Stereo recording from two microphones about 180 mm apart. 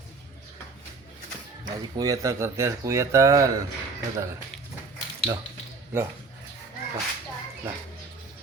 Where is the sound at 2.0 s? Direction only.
20° right (ahead or behind).